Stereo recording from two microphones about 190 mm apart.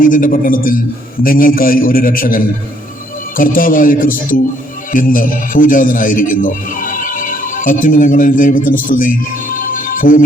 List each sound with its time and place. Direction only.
0.0 s a man's voice: 45° left (ahead or behind)